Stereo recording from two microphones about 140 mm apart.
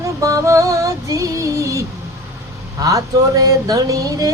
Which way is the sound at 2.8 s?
25° right (ahead or behind).